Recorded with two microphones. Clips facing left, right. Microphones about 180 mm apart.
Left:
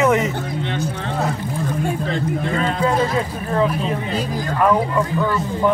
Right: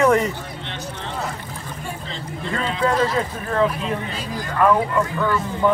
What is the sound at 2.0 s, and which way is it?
Speech, 55° left (ahead or behind).